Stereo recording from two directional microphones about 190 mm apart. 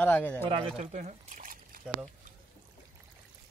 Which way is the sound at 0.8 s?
35° right (ahead or behind).